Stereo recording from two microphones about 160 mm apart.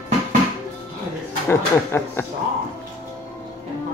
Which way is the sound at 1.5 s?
15° left (ahead or behind).